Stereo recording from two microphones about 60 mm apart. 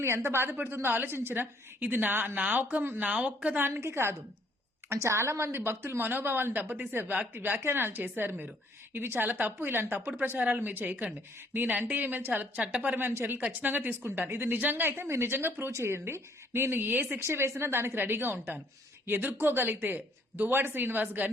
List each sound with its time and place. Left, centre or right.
0.0 s a woman's voice: right
3.7 s a woman's voice: right
13.0 s a woman's voice: right
17.2 s a woman's voice: right